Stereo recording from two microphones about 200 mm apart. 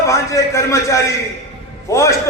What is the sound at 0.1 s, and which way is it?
A man's voice, 15° left (ahead or behind).